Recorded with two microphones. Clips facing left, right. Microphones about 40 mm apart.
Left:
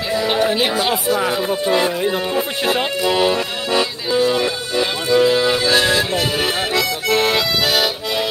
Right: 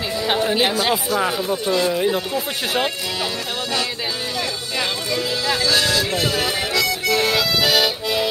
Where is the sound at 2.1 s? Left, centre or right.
Centre.